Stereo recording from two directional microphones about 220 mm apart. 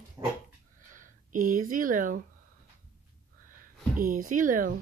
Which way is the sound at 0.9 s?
35° right (ahead or behind).